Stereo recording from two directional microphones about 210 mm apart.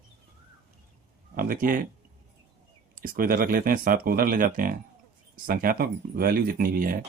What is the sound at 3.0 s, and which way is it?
Speech, 45° right (ahead or behind).